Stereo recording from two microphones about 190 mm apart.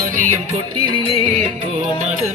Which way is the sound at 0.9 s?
25° right (ahead or behind).